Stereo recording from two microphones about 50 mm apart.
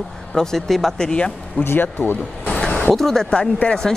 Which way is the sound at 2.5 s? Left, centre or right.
Centre.